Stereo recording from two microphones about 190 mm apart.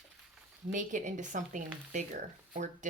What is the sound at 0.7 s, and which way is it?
Speech, 40° right (ahead or behind).